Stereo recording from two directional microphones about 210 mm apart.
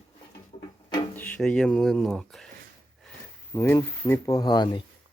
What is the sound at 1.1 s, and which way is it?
Speech, 5° left (ahead or behind).